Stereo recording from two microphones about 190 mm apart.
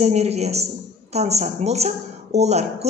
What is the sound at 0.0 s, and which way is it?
A woman's voice, 35° right (ahead or behind).